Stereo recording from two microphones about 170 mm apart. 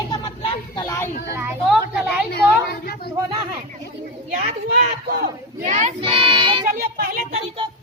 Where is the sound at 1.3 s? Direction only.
15° right (ahead or behind).